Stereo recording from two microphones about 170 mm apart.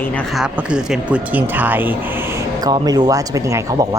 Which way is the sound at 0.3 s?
5° right (ahead or behind).